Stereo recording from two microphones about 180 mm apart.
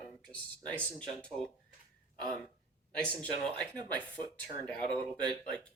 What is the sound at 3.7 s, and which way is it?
Speech, 25° right (ahead or behind).